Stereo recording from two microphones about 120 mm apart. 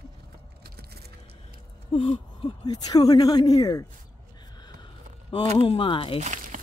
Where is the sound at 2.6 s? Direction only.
35° left (ahead or behind).